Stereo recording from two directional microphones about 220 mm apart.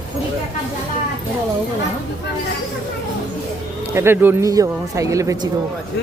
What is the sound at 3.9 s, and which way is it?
Speech, 10° right (ahead or behind).